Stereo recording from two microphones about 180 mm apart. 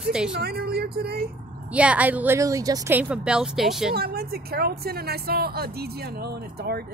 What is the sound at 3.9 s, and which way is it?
Speech, 60° right (ahead or behind).